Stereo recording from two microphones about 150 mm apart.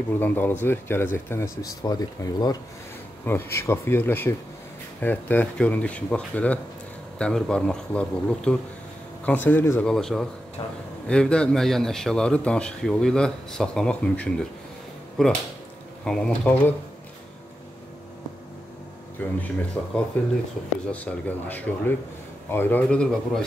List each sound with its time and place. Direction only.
0.2 s speech: 15° left (ahead or behind)
3.3 s a man's voice: 15° left (ahead or behind)
10.6 s speech: 35° left (ahead or behind)
11.1 s a man's voice: 5° left (ahead or behind)
19.1 s speech: 10° left (ahead or behind)